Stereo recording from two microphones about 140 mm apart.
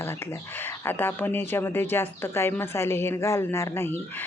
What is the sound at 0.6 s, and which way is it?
Speech, 15° left (ahead or behind).